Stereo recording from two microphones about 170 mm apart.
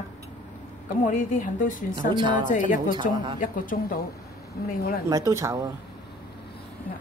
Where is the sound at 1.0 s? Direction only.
50° left (ahead or behind).